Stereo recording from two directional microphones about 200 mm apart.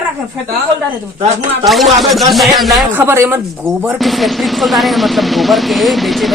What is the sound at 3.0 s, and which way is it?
Speech, 10° right (ahead or behind).